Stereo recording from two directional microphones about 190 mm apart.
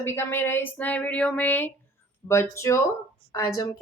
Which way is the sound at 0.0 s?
10° left (ahead or behind).